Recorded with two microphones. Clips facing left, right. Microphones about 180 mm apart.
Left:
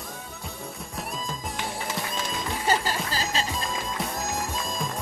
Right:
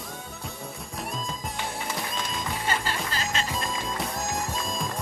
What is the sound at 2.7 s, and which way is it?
Music, 40° left (ahead or behind).